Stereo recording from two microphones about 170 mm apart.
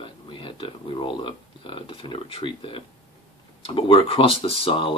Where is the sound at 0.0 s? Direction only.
30° left (ahead or behind).